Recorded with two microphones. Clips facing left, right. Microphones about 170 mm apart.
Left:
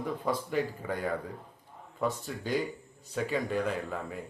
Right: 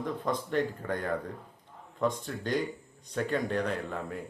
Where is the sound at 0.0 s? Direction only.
10° left (ahead or behind).